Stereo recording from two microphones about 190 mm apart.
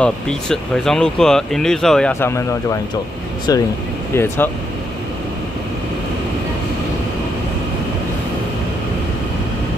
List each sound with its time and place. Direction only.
0.0 s speech: 5° left (ahead or behind)